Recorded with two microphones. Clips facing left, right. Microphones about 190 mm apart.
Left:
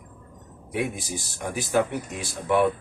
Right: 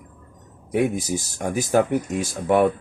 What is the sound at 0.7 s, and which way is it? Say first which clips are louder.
Speech: right 7 dB; 45° right (ahead or behind).